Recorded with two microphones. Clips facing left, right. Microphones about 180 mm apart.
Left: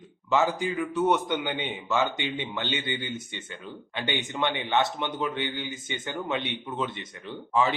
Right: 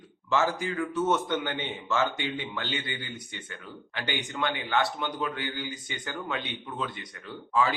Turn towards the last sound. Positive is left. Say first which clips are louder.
# left 1 dB
turn(degrees=25)  # may be behind; listen again after turning